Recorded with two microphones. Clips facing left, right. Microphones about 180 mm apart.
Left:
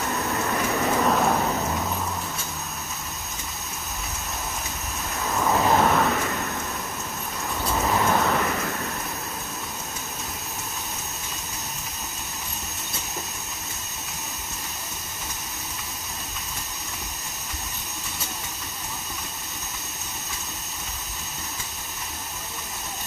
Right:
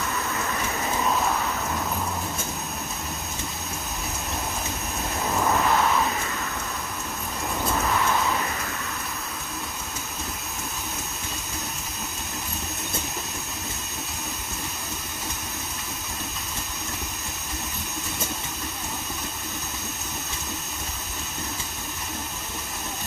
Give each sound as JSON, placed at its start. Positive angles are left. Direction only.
{"t": 0.5, "sound": "vehicle", "side_deg": 45}
{"t": 5.7, "sound": "vehicle", "side_deg": 35}
{"t": 5.9, "sound": "a sound", "side_deg": 50}
{"t": 7.9, "sound": "vehicle", "side_deg": 35}